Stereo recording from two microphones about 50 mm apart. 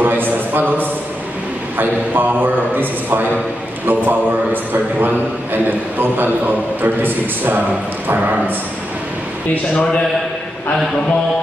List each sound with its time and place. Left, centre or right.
0.0 s a man's voice: right
9.8 s a man's voice: centre